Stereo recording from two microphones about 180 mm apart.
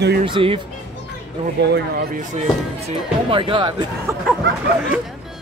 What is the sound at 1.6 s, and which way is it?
Speech, 75° right (ahead or behind).